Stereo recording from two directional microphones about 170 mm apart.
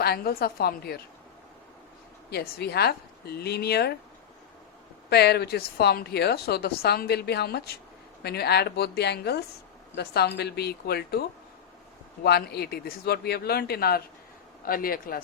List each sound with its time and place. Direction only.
0.0 s a woman's voice: 65° left (ahead or behind)
2.3 s a woman's voice: 70° left (ahead or behind)
5.0 s a woman's voice: 70° left (ahead or behind)